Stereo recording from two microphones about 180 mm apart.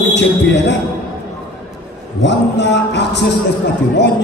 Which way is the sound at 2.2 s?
75° left (ahead or behind).